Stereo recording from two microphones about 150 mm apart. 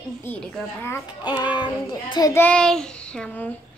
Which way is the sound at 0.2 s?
15° left (ahead or behind).